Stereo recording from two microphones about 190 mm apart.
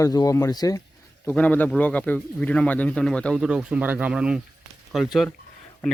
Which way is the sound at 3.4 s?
5° right (ahead or behind).